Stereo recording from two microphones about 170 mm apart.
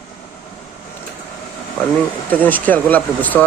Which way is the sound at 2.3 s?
10° left (ahead or behind).